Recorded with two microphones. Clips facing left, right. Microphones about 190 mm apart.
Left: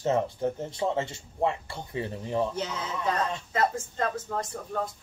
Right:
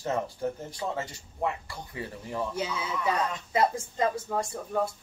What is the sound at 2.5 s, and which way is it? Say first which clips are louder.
Speech: right 1 dB; 10° right (ahead or behind).